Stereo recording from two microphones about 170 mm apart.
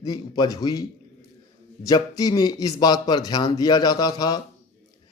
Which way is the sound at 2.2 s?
25° left (ahead or behind).